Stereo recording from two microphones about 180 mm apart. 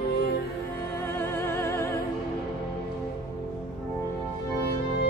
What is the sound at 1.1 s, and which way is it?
Music, 15° left (ahead or behind).